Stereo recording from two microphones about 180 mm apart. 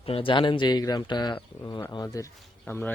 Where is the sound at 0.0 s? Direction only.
30° left (ahead or behind).